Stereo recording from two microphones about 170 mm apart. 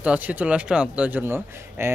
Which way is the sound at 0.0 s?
10° right (ahead or behind).